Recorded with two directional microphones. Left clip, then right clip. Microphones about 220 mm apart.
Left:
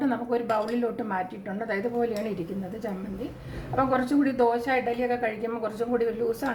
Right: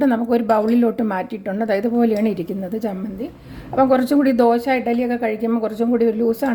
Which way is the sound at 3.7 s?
40° right (ahead or behind).